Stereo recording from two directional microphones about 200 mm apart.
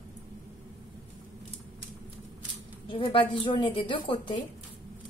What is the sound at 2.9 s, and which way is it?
Speech, 25° left (ahead or behind).